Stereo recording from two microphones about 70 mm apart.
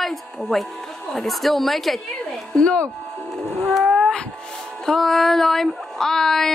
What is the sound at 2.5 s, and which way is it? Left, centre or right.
Speech, centre.